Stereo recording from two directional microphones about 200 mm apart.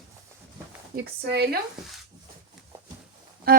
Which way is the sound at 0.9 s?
55° right (ahead or behind).